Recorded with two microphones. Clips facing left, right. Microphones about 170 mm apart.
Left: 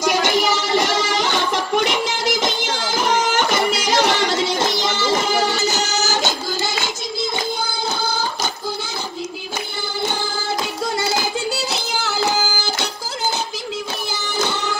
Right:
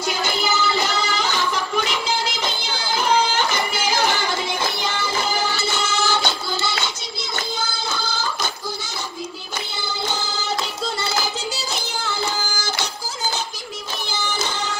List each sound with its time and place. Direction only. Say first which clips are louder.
0.0 s music: left 6 dB; 90° left; by 2.0 s 65° left (ahead or behind)
2.4 s music: left 4 dB; 90° left
5.6 s music: left 2 dB; 40° left (ahead or behind)
7.6 s music: left 4 dB; 55° left (ahead or behind)
11.1 s music: left 4 dB; 70° left (ahead or behind)
14.3 s music: left 7 dB; 65° left (ahead or behind)